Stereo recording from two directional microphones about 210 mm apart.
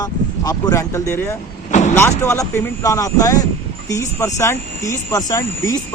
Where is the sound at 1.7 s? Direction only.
35° left (ahead or behind).